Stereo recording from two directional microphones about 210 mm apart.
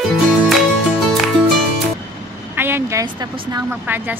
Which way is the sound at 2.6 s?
10° right (ahead or behind).